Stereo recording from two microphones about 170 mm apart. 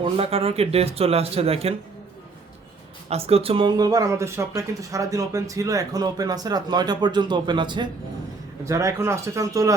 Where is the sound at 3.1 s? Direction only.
35° right (ahead or behind).